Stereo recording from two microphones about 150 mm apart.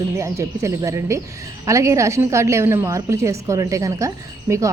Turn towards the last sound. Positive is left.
turn(degrees=-20)  # may be behind; listen again after turning